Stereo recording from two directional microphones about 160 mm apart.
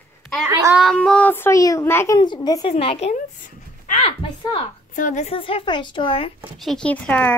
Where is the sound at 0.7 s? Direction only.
Centre (ahead or behind).